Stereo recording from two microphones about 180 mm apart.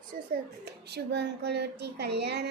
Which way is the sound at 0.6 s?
65° right (ahead or behind).